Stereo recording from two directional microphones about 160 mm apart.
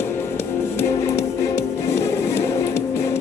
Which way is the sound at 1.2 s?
40° left (ahead or behind).